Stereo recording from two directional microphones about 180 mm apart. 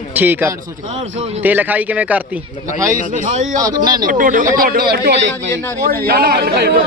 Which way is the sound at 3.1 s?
45° right (ahead or behind).